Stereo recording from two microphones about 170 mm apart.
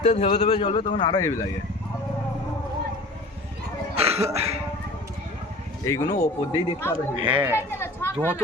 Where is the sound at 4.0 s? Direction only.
35° right (ahead or behind).